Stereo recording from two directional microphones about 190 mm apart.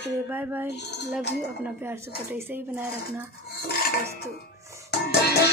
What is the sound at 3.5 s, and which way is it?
Cutlery, 55° left (ahead or behind).